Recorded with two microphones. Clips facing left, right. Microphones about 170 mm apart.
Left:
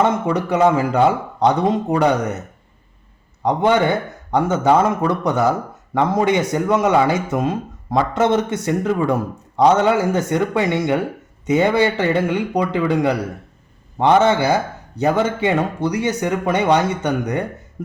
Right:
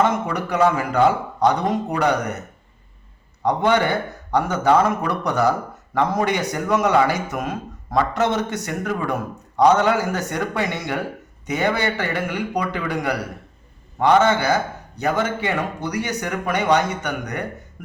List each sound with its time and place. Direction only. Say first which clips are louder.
0.0 s speech: left 3 dB; 25° left (ahead or behind)
3.4 s speech: left 3 dB; 20° left (ahead or behind)
17.8 s a sound: left 10 dB; 25° left (ahead or behind)